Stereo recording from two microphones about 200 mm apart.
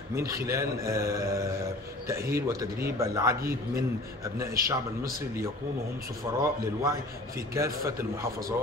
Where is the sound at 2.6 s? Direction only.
15° right (ahead or behind).